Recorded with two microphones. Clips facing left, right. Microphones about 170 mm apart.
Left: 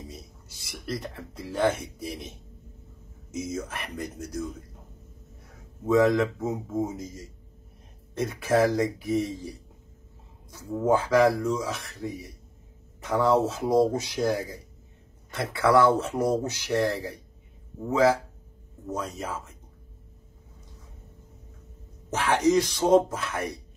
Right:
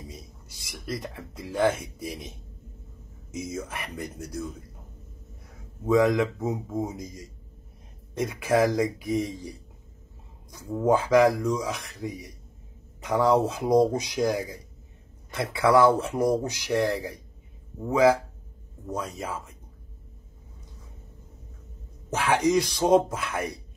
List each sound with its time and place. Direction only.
0.6 s speech: 15° right (ahead or behind)
3.3 s speech: 10° right (ahead or behind)
5.9 s speech: 15° right (ahead or behind)
8.1 s speech: 15° right (ahead or behind)
18.9 s speech: 10° right (ahead or behind)
22.1 s speech: 10° right (ahead or behind)